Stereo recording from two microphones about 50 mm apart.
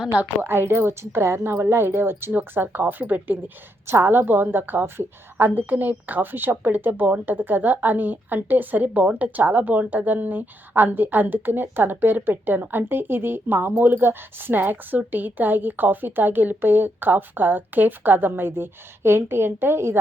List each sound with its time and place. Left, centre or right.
0.4 s a woman's voice: right
3.8 s a woman's voice: right